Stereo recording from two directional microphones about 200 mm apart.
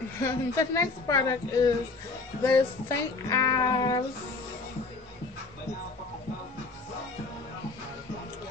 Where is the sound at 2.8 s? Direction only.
20° left (ahead or behind).